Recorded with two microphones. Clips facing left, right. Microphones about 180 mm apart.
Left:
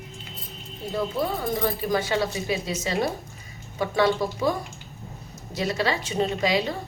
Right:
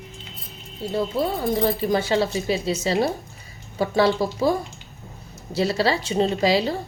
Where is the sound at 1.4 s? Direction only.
30° right (ahead or behind).